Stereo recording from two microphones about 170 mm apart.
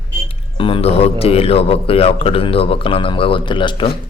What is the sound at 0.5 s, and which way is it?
A man's voice, 30° left (ahead or behind).